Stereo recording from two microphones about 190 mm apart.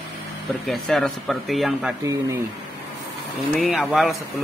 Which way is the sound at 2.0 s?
20° right (ahead or behind).